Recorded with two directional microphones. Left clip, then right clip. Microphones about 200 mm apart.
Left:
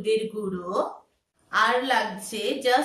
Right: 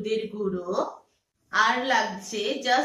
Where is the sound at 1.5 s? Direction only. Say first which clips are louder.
Even; 45° left (ahead or behind).